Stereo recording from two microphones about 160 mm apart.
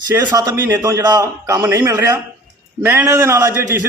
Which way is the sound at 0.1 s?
15° right (ahead or behind).